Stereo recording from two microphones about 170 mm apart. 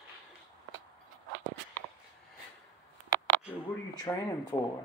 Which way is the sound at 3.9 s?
20° left (ahead or behind).